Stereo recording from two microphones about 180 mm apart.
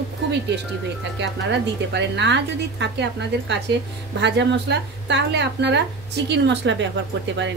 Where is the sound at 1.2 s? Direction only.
75° right (ahead or behind).